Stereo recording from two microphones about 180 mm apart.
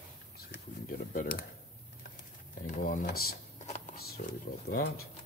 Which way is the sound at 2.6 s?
40° left (ahead or behind).